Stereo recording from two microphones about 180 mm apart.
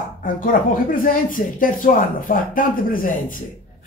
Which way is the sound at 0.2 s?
50° left (ahead or behind).